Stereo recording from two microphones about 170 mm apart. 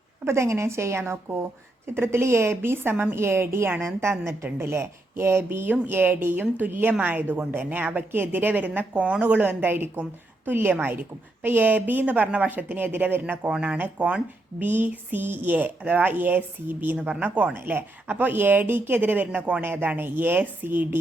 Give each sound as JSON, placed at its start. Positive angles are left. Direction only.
{"t": 0.3, "sound": "speech", "side_deg": -15}